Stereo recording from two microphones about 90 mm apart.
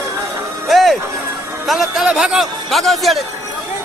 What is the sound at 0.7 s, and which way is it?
Music, centre (ahead or behind).